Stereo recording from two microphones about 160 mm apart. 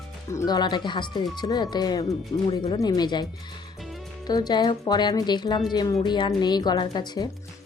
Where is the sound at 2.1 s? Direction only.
35° left (ahead or behind).